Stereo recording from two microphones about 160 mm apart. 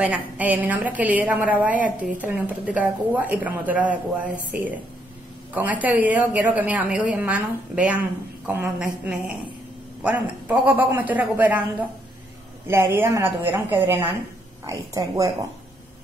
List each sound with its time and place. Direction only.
0.0 s a woman's voice: 10° right (ahead or behind)
12.6 s a woman's voice: 15° right (ahead or behind)